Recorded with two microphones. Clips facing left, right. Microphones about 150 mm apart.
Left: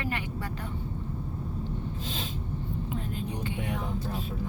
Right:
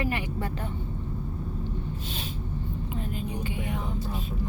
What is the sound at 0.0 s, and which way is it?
Vehicle, 15° right (ahead or behind).